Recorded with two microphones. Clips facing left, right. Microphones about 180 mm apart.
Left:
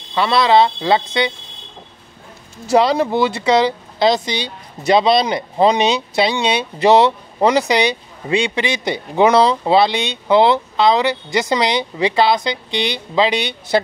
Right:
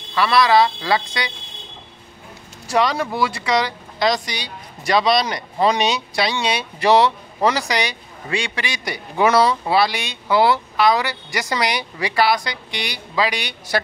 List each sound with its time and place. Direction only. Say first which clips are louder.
0.1 s speech: left 2 dB; 25° left (ahead or behind)
2.7 s speech: left 6 dB; 25° left (ahead or behind)